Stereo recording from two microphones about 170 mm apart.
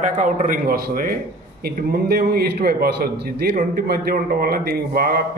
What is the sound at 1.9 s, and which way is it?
A man's voice, 65° right (ahead or behind).